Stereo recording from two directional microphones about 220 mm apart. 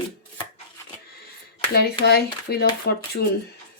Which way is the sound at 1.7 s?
45° left (ahead or behind).